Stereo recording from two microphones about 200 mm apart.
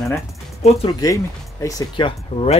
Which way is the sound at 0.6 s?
30° left (ahead or behind).